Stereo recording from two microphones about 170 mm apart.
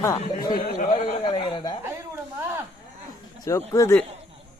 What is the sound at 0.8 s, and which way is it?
Speech, 50° left (ahead or behind).